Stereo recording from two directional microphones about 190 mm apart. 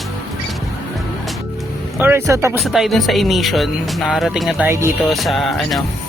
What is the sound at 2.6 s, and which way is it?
Speech, centre (ahead or behind).